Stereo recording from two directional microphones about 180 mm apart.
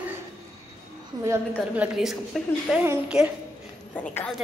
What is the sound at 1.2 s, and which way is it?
Speech, 15° right (ahead or behind).